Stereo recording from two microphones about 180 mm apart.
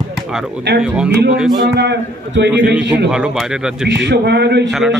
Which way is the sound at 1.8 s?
70° right (ahead or behind).